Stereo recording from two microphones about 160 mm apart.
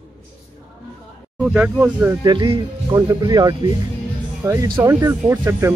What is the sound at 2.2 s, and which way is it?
Speech, 30° right (ahead or behind).